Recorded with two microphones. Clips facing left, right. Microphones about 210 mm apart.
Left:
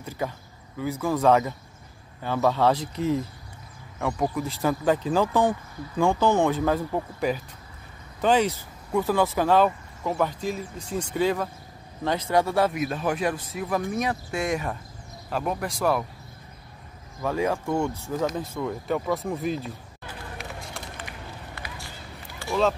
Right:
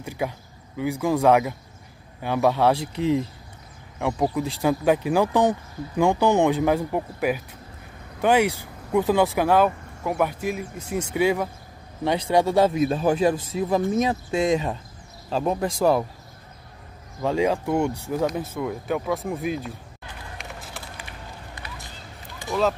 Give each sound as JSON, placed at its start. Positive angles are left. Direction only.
{"t": 0.0, "sound": "speech", "side_deg": -15}
{"t": 12.4, "sound": "a man's voice", "side_deg": -25}
{"t": 17.2, "sound": "speech", "side_deg": -20}
{"t": 20.3, "sound": "run", "side_deg": -5}